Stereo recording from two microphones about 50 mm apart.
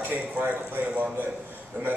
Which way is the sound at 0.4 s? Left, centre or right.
Right.